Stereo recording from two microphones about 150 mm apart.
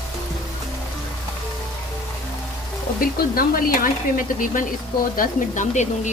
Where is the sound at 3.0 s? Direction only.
70° left (ahead or behind).